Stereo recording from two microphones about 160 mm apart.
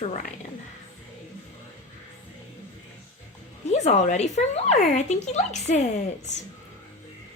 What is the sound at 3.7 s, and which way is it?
Speech, 45° left (ahead or behind).